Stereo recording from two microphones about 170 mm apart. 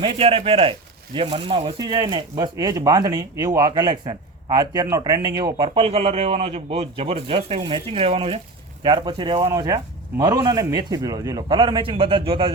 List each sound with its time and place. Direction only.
0.0 s speech: 35° right (ahead or behind)